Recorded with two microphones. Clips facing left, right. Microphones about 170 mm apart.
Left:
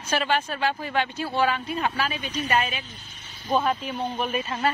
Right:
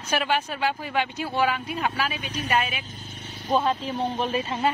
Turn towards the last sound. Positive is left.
turn(degrees=-25)  # may be behind; listen again after turning